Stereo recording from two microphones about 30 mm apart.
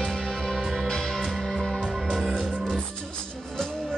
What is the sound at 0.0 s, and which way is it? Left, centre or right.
Music, centre.